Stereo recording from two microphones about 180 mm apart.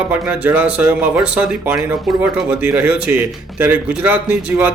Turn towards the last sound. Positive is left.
turn(degrees=-10)  # may be behind; listen again after turning